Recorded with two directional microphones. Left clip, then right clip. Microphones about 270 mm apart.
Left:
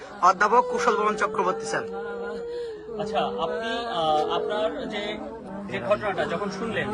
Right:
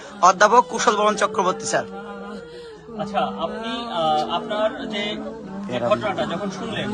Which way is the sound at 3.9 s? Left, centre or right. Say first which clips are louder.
Right 3 dB; centre.